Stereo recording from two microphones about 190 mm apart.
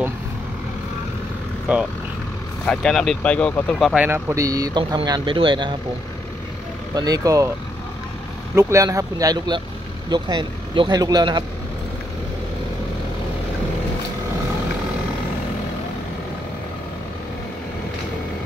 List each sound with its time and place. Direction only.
1.7 s speech: 5° right (ahead or behind)
3.9 s speech: 10° right (ahead or behind); by 5.8 s 25° right (ahead or behind)
7.0 s speech: 20° right (ahead or behind)
8.5 s speech: 15° right (ahead or behind)